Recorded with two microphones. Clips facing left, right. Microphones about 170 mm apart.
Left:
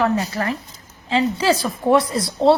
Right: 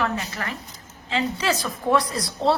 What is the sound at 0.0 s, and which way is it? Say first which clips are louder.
A woman's voice: left 7 dB; 35° left (ahead or behind).